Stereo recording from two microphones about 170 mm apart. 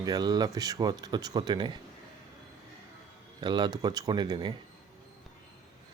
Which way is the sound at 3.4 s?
25° right (ahead or behind).